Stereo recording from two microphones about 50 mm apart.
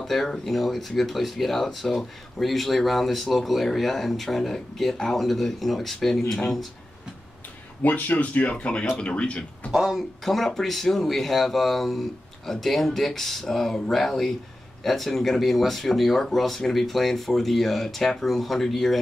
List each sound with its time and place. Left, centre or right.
0.0 s speech: centre
7.8 s speech: left
9.7 s speech: centre
10.2 s speech: centre